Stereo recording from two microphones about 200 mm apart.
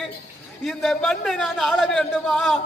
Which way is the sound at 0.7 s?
Centre (ahead or behind).